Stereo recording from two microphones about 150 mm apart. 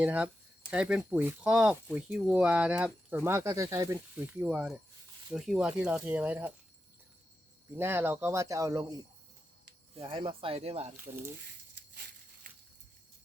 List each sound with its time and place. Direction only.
0.0 s speech: 10° right (ahead or behind)
7.8 s speech: 15° right (ahead or behind)
9.9 s speech: 35° right (ahead or behind)
10.9 s speech: 15° right (ahead or behind)